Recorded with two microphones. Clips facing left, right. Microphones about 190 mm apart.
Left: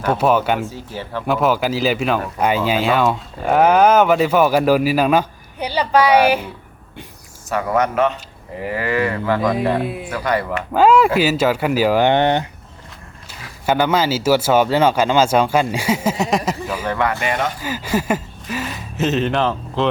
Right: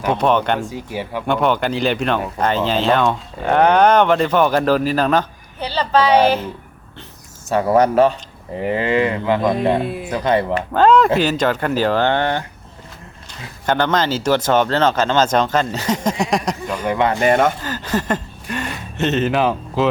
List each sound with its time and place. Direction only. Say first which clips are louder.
0.1 s speech: left 1 dB; 5° left (ahead or behind)
0.7 s speech: right 3 dB; 15° right (ahead or behind)
1.3 s speech: left 1 dB; 5° left (ahead or behind)
7.5 s speech: right 4 dB; 30° right (ahead or behind)
9.8 s speech: even; centre (ahead or behind)
10.2 s speech: right 3 dB; 25° right (ahead or behind)
10.8 s speech: even; 10° left (ahead or behind)
13.7 s speech: left 1 dB; 10° left (ahead or behind)
16.8 s speech: right 3 dB; 15° right (ahead or behind)
17.1 s speech: right 6 dB; 35° right (ahead or behind)
17.6 s speech: left 1 dB; 10° left (ahead or behind); by 19.9 s 5° right (ahead or behind)